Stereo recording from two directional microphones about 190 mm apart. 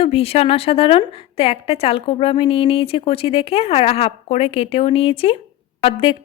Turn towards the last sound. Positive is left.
turn(degrees=30)  # may be behind; listen again after turning